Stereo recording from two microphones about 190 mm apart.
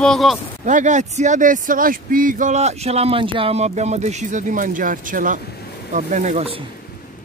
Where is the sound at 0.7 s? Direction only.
40° right (ahead or behind).